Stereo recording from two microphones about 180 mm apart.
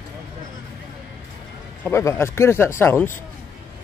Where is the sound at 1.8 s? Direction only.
15° left (ahead or behind).